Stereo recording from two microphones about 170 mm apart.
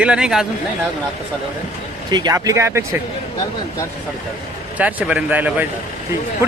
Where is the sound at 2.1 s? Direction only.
25° right (ahead or behind).